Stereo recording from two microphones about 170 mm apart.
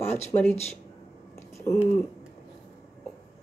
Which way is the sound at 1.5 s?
15° left (ahead or behind).